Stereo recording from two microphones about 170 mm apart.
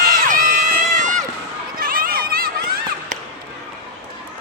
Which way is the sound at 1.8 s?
55° right (ahead or behind).